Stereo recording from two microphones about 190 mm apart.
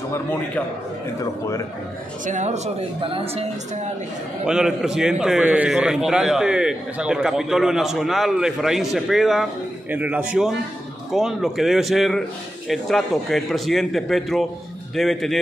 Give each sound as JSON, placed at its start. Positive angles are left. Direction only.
{"t": 2.2, "sound": "speech", "side_deg": -40}
{"t": 4.5, "sound": "a man's voice", "side_deg": -5}